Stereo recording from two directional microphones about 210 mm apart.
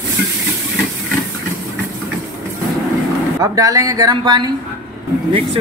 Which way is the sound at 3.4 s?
15° right (ahead or behind).